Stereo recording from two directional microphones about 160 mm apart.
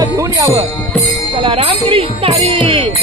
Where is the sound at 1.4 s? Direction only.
35° right (ahead or behind).